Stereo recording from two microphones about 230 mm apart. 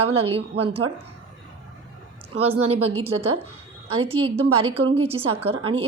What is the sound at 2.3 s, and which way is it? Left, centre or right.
Speech, right.